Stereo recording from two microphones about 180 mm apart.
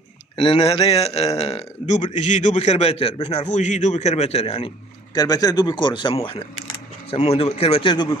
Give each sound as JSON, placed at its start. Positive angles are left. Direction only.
{"t": 0.4, "sound": "a man's voice", "side_deg": 30}
{"t": 5.1, "sound": "a man's voice", "side_deg": 20}